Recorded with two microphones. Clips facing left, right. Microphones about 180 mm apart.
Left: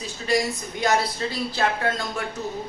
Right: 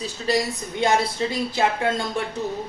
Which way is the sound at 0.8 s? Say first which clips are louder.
Right 2 dB; 25° right (ahead or behind).